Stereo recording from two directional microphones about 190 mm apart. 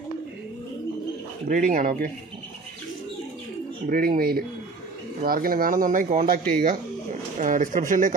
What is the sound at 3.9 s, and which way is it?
Speech, 50° right (ahead or behind).